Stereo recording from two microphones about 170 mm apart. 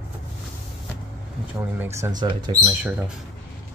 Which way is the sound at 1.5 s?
15° right (ahead or behind).